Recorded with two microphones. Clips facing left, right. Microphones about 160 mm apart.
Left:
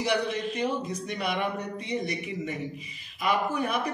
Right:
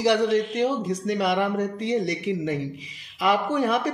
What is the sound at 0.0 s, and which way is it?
Speech, 90° right.